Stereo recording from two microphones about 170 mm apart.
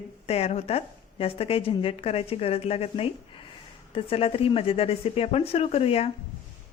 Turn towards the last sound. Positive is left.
turn(degrees=35)  # may be behind; listen again after turning